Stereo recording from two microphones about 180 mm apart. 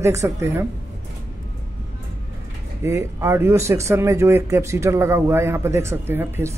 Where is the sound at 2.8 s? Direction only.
15° right (ahead or behind).